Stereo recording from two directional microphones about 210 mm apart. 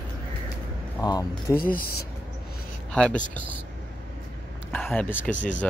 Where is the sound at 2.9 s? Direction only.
5° left (ahead or behind).